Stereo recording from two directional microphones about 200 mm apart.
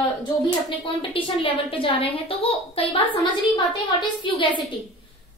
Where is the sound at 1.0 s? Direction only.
25° left (ahead or behind).